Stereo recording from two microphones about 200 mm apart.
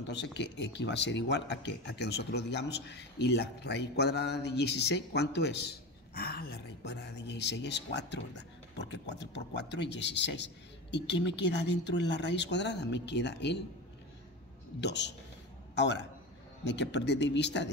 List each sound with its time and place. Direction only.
0.0 s speech: 60° left (ahead or behind)
14.8 s a man's voice: 60° left (ahead or behind)